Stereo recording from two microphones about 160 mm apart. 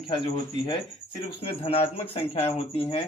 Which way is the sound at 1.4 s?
40° left (ahead or behind).